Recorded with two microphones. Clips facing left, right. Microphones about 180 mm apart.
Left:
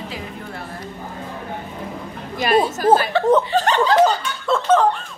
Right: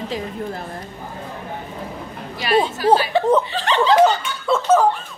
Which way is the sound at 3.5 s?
45° left (ahead or behind).